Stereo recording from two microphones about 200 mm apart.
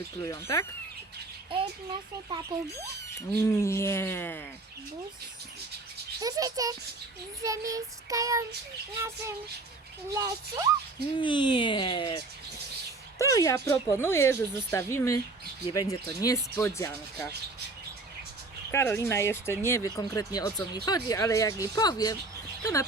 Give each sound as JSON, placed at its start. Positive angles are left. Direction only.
{"t": 0.2, "sound": "speech", "side_deg": 15}
{"t": 2.6, "sound": "speech", "side_deg": 15}
{"t": 6.1, "sound": "child singing", "side_deg": -20}
{"t": 10.1, "sound": "child singing", "side_deg": -15}
{"t": 11.2, "sound": "speech", "side_deg": 25}
{"t": 18.7, "sound": "speech", "side_deg": 15}